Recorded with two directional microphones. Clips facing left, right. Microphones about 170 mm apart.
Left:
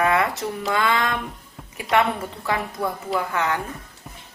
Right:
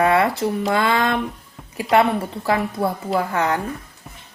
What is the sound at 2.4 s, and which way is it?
Speech, 30° right (ahead or behind).